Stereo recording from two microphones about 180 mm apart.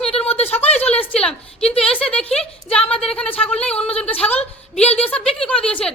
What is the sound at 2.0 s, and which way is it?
A woman's voice, 5° left (ahead or behind).